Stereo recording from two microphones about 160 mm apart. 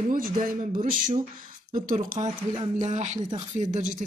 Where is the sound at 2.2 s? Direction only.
35° right (ahead or behind).